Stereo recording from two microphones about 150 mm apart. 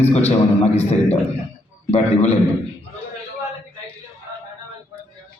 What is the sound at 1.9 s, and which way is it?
Speech, 45° left (ahead or behind).